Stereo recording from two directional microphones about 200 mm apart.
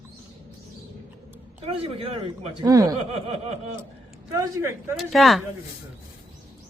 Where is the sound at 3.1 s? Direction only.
30° right (ahead or behind).